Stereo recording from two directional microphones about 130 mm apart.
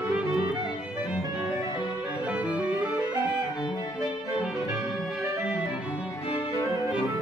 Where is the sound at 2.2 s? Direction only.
10° right (ahead or behind).